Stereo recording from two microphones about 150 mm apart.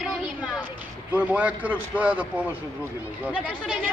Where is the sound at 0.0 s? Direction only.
10° right (ahead or behind).